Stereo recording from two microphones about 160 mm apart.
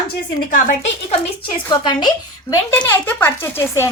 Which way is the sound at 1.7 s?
30° left (ahead or behind).